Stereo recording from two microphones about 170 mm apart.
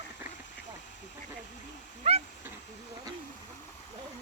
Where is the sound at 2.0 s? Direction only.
35° right (ahead or behind).